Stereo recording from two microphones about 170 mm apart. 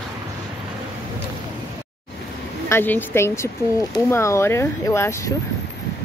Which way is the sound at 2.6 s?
10° left (ahead or behind).